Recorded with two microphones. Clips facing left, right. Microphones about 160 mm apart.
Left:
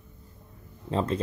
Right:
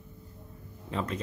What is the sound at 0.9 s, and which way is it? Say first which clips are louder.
Speech: left 6 dB; 30° left (ahead or behind).